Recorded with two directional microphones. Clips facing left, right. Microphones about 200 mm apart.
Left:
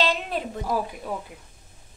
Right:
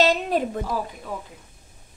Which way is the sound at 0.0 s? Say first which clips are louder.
Right 5 dB; 45° right (ahead or behind).